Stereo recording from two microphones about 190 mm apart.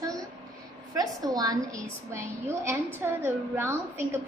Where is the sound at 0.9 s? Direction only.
20° right (ahead or behind).